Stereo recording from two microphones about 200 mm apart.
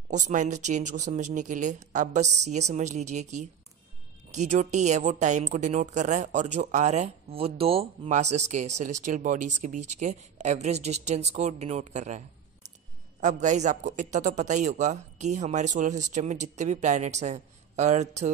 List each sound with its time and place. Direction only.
0.1 s a woman's voice: 35° right (ahead or behind)
13.2 s a woman's voice: 40° right (ahead or behind)